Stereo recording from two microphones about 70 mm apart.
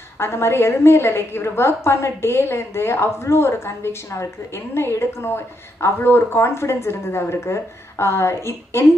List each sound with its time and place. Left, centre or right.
0.2 s a woman's voice: left